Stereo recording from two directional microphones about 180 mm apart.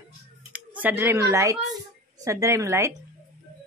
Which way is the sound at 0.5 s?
10° right (ahead or behind).